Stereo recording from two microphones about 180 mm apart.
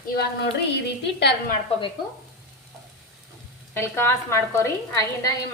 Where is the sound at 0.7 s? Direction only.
70° left (ahead or behind).